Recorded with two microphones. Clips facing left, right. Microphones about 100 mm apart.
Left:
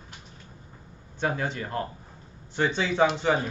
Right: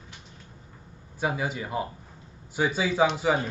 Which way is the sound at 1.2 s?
5° right (ahead or behind).